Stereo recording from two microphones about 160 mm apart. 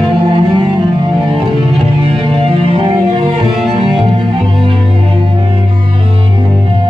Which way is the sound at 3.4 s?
5° right (ahead or behind).